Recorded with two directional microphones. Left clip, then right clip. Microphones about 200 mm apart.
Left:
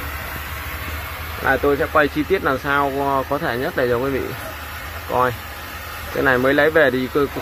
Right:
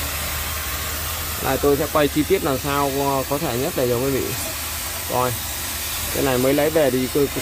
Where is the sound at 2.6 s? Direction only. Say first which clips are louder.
Left 2 dB; 5° right (ahead or behind).